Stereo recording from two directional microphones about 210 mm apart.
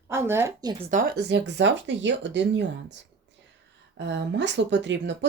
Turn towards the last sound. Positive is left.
turn(degrees=-60)  # may be behind; listen again after turning